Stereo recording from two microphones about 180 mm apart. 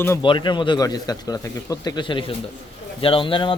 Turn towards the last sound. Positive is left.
turn(degrees=30)  # may be behind; listen again after turning